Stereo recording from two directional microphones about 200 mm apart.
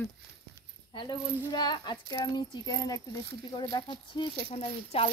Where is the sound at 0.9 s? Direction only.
20° left (ahead or behind).